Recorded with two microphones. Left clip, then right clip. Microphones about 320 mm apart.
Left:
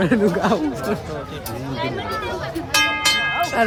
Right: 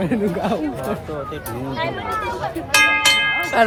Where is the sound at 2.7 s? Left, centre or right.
Right.